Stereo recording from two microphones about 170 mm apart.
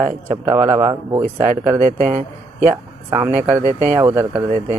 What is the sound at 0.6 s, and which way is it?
Speech, 15° right (ahead or behind).